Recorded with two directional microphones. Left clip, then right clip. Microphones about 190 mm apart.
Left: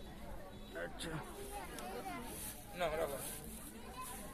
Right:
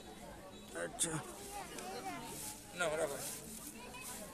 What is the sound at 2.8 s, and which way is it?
Speech, 45° right (ahead or behind).